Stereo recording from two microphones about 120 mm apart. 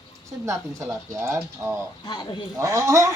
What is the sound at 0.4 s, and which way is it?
Speech, 25° right (ahead or behind).